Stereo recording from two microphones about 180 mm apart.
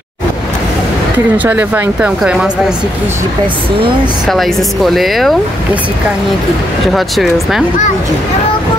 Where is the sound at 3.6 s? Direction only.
30° right (ahead or behind).